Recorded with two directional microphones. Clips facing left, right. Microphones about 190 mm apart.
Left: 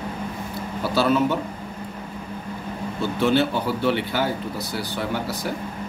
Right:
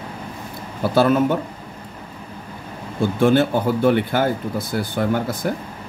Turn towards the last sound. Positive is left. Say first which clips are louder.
# right 5 dB
turn(degrees=-50)  # may be behind; listen again after turning